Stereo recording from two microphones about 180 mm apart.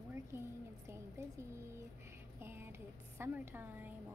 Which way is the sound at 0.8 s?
15° right (ahead or behind).